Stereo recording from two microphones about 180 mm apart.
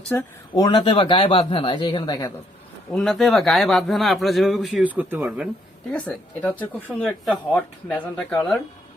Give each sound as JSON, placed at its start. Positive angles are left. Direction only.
{"t": 0.1, "sound": "speech", "side_deg": 15}
{"t": 2.9, "sound": "a man's voice", "side_deg": 0}
{"t": 5.9, "sound": "speech", "side_deg": 5}